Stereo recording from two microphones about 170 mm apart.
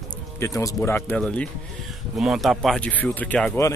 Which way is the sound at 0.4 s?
20° left (ahead or behind).